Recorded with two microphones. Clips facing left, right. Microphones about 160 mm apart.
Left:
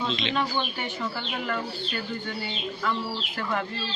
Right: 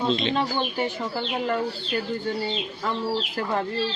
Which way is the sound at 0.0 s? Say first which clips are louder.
Right 5 dB; 45° right (ahead or behind).